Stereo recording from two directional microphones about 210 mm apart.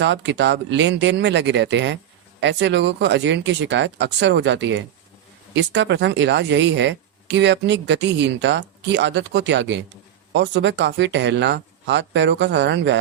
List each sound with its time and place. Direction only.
0.0 s a woman's voice: 55° right (ahead or behind)